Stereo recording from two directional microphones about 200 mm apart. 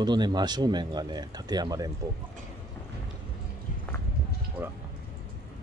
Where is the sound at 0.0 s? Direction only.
20° right (ahead or behind).